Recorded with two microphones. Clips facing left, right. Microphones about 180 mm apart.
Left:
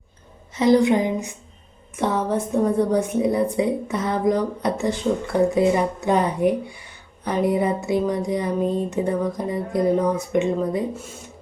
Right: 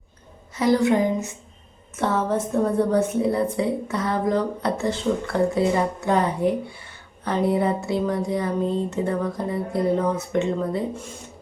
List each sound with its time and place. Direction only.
0.5 s a woman's voice: 20° left (ahead or behind)